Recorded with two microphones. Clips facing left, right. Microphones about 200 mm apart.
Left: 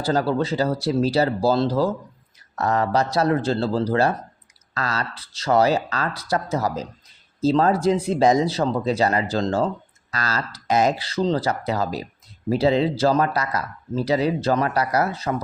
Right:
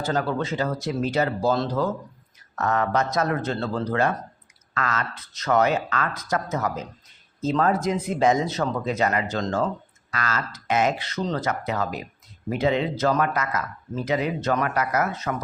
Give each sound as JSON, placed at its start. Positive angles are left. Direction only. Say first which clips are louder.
{"t": 0.0, "sound": "speech", "louder": "left 4 dB", "side_deg": 35}